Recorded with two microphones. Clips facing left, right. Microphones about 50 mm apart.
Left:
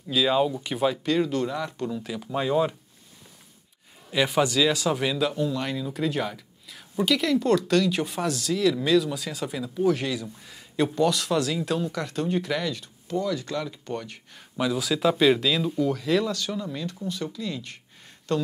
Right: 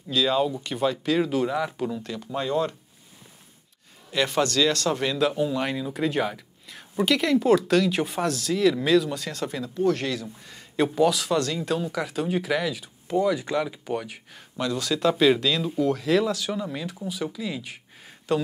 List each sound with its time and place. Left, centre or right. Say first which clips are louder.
0.1 s a man's voice: left 1 dB; centre
2.0 s a man's voice: left 2 dB; centre
4.1 s a man's voice: left 1 dB; centre
5.3 s a man's voice: right 2 dB; centre
13.1 s speech: right 4 dB; centre
14.6 s a man's voice: left 1 dB; centre